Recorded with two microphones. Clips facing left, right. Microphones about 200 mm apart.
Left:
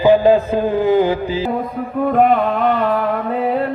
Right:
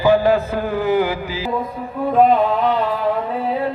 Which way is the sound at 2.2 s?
60° left (ahead or behind).